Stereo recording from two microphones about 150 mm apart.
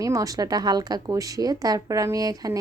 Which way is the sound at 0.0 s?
20° right (ahead or behind).